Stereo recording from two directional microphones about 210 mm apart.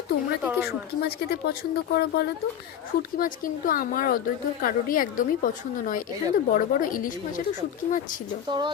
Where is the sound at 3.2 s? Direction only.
40° left (ahead or behind).